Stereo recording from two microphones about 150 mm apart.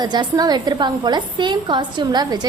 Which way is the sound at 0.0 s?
30° right (ahead or behind).